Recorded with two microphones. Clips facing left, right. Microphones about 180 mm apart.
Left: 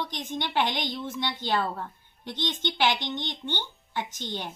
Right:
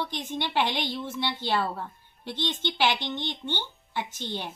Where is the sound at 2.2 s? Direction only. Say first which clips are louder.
Even; 15° left (ahead or behind).